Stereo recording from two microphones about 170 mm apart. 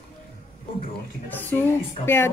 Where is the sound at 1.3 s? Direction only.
10° left (ahead or behind).